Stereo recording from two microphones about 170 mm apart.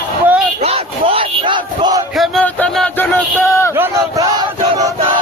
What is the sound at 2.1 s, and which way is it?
Music, centre (ahead or behind).